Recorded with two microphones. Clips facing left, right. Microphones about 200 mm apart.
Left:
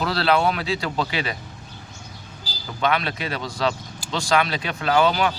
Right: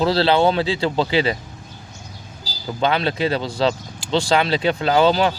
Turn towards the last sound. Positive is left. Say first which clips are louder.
# right 3 dB
turn(degrees=-30)  # may be behind; listen again after turning